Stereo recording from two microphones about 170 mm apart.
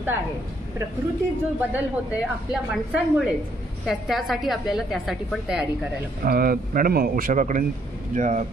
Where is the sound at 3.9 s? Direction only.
Centre (ahead or behind).